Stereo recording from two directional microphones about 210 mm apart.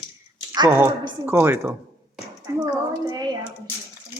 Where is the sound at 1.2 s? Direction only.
10° right (ahead or behind).